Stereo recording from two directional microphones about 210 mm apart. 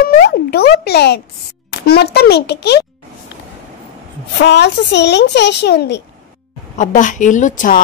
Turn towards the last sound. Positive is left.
turn(degrees=40)  # may be behind; listen again after turning